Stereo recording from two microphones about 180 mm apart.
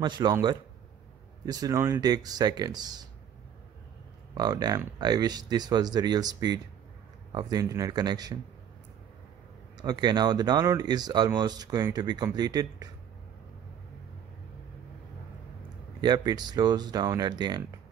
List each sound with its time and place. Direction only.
0.0 s speech: 25° right (ahead or behind)
4.4 s speech: 20° right (ahead or behind)
9.8 s speech: 25° right (ahead or behind)
16.0 s speech: 25° right (ahead or behind)